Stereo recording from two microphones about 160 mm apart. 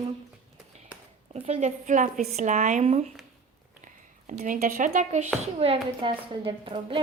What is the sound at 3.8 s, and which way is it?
Speech, 55° right (ahead or behind).